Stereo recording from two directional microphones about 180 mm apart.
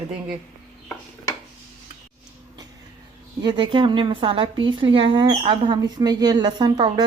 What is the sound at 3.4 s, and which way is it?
A woman's voice, 25° right (ahead or behind).